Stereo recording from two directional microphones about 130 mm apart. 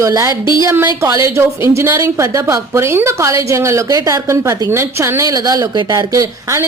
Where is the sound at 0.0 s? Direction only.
25° right (ahead or behind).